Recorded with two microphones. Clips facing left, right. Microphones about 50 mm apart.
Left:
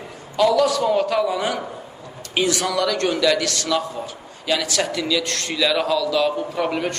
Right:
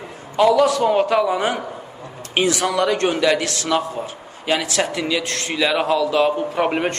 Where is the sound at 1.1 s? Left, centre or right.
Centre.